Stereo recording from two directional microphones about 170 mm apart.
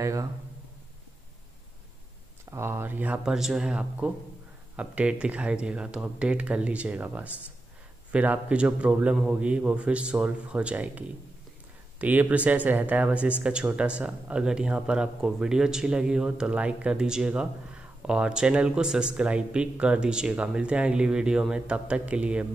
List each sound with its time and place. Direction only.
0.0 s speech: 20° right (ahead or behind)
2.5 s a man's voice: 15° right (ahead or behind)